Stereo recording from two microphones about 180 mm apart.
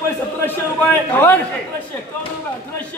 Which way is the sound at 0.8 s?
10° left (ahead or behind).